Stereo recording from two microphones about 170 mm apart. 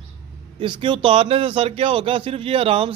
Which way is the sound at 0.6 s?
30° right (ahead or behind).